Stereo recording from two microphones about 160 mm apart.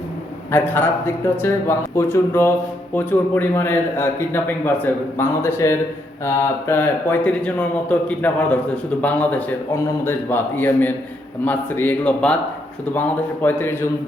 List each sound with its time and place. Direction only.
0.5 s speech: 15° left (ahead or behind)